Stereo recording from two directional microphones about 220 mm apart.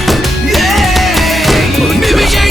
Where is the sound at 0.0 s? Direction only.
Centre (ahead or behind).